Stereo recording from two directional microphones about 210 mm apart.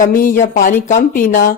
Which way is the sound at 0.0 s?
40° left (ahead or behind).